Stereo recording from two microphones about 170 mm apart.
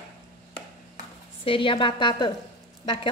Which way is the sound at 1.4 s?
30° left (ahead or behind).